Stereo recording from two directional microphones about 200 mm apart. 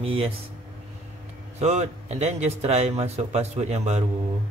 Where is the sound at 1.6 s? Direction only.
35° right (ahead or behind).